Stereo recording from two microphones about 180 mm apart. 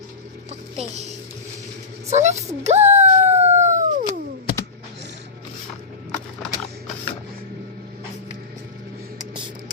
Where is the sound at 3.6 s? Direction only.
45° right (ahead or behind).